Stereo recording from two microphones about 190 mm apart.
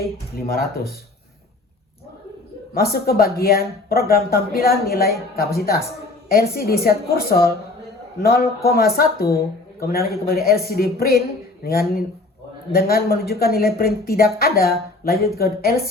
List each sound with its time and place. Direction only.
0.3 s speech: 55° left (ahead or behind)
2.7 s speech: 55° left (ahead or behind)
9.0 s speech: 55° left (ahead or behind)